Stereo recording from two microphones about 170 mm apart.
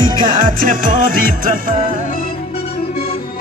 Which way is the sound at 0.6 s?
55° right (ahead or behind).